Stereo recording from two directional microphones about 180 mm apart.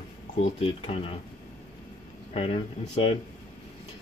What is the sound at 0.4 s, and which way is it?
Speech, 35° left (ahead or behind).